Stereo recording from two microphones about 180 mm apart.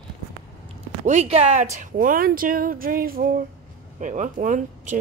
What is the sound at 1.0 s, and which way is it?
A woman's voice, 40° right (ahead or behind).